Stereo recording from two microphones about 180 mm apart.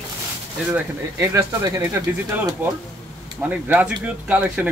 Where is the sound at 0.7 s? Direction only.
15° right (ahead or behind).